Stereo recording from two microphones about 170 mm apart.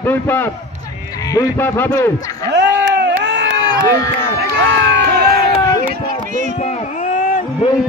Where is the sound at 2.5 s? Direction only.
90° right.